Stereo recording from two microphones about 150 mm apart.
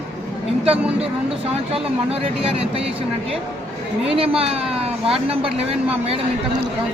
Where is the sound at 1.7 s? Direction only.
40° right (ahead or behind).